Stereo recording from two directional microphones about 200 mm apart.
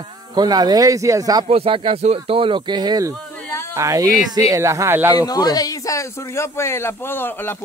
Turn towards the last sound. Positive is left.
turn(degrees=10)  # may be behind; listen again after turning